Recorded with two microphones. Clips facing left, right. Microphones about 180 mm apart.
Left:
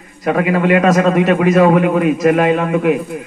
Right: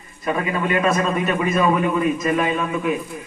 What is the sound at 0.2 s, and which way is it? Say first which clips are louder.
A man's voice: left 8 dB; 80° left.